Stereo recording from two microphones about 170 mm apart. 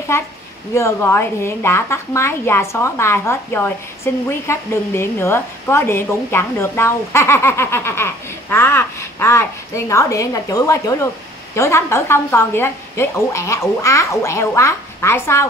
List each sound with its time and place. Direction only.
0.1 s speech: 15° left (ahead or behind)